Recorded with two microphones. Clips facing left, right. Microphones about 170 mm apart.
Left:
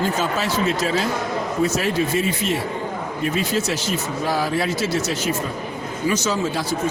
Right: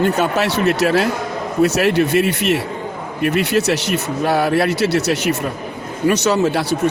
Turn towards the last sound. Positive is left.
turn(degrees=-70)  # may be behind; listen again after turning